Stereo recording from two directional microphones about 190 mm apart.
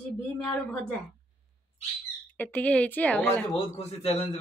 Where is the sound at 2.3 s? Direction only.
10° left (ahead or behind).